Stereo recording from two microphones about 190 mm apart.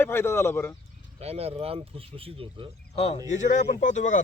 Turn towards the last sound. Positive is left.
turn(degrees=40)  # may be behind; listen again after turning